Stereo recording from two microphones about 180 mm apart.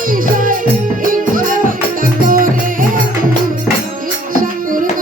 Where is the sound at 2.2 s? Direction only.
50° right (ahead or behind).